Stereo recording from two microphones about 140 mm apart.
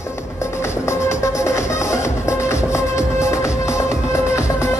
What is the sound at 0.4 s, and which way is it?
Music, 20° left (ahead or behind).